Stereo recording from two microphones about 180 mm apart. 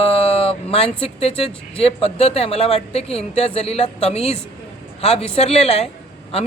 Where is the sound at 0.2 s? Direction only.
30° left (ahead or behind).